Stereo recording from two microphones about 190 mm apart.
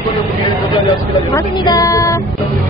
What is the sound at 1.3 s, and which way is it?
Speech, 20° left (ahead or behind).